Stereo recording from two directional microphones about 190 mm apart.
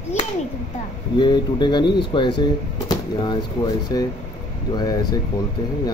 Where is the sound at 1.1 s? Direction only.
25° left (ahead or behind).